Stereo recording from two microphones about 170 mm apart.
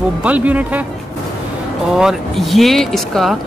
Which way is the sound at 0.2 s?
10° right (ahead or behind).